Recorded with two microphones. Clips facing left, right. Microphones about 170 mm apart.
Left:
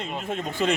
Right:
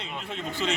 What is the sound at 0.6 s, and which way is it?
Speech, 50° left (ahead or behind).